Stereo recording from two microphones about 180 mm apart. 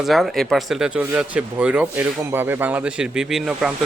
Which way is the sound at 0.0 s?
Centre (ahead or behind).